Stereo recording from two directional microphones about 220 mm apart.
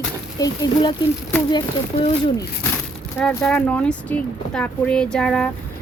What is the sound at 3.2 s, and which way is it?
Speech, 5° left (ahead or behind).